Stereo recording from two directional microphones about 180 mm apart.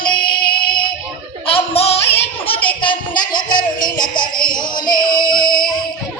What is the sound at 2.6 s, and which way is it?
Music, 25° left (ahead or behind).